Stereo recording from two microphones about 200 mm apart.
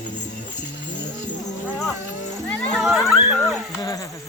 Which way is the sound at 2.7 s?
Centre (ahead or behind).